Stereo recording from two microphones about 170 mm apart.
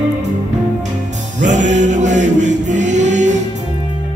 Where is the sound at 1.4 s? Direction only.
45° right (ahead or behind).